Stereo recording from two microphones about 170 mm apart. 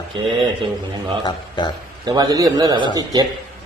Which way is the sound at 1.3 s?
25° left (ahead or behind).